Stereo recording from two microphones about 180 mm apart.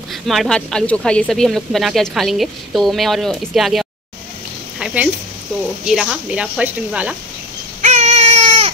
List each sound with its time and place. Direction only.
0.1 s a woman's voice: centre (ahead or behind)
7.8 s baby cry: 40° right (ahead or behind)